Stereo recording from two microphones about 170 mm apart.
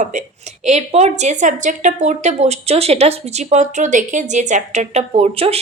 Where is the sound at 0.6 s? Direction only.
40° right (ahead or behind).